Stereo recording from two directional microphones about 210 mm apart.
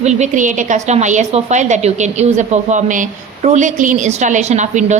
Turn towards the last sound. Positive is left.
turn(degrees=-35)  # may be behind; listen again after turning